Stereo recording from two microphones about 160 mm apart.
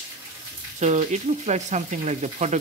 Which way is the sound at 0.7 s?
45° right (ahead or behind).